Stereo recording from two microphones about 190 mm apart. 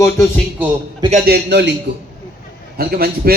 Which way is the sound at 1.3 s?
65° right (ahead or behind).